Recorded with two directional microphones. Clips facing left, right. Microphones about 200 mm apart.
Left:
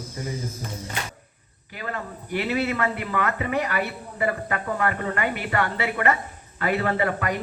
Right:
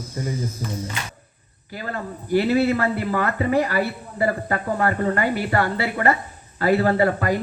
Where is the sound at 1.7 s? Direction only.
35° right (ahead or behind).